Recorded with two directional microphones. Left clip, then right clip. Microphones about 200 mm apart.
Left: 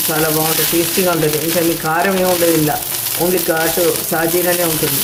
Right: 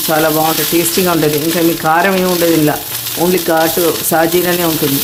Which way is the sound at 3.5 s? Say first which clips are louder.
Right 6 dB; 55° right (ahead or behind).